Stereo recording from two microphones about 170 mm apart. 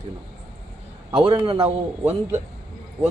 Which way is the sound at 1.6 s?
15° right (ahead or behind).